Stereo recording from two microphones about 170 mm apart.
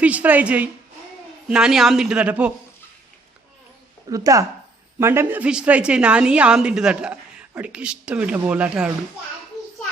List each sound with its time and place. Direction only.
0.0 s a woman's voice: 10° right (ahead or behind)
4.1 s a woman's voice: 20° right (ahead or behind)